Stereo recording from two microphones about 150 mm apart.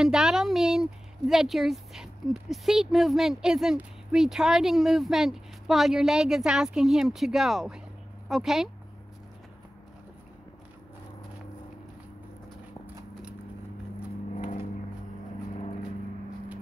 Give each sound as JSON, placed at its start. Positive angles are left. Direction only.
{"t": 0.0, "sound": "a woman's voice", "side_deg": -5}